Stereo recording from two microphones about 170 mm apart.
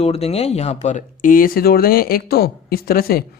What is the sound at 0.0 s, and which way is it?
Speech, 35° left (ahead or behind).